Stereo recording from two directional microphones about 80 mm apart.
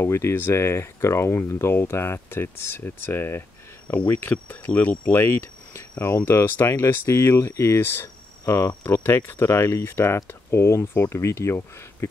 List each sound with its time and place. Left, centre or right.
0.0 s speech: left